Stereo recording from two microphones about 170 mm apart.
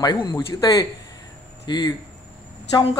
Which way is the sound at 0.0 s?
25° left (ahead or behind).